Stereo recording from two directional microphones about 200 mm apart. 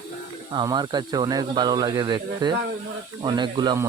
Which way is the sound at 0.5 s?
20° right (ahead or behind).